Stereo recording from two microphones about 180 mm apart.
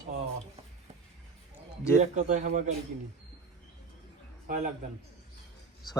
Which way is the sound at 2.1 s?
40° right (ahead or behind).